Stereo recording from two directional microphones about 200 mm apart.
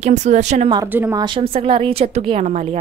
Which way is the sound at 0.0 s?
35° right (ahead or behind).